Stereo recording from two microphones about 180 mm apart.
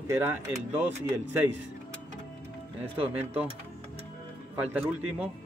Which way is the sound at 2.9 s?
35° right (ahead or behind).